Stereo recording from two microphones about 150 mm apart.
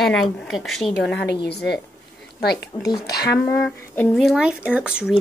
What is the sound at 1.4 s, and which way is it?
Speech, 90° left.